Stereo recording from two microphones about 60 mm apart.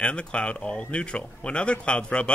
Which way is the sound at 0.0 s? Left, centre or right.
Centre.